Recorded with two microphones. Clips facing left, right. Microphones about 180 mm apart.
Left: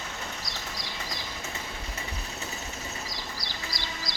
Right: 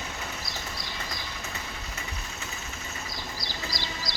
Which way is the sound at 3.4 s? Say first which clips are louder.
Right 2 dB; 65° left (ahead or behind).